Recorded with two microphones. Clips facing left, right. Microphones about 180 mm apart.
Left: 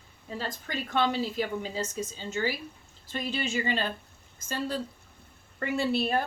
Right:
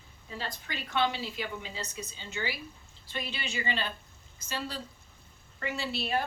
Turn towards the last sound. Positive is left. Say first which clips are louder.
# left 6 dB
turn(degrees=50)  # may be behind; listen again after turning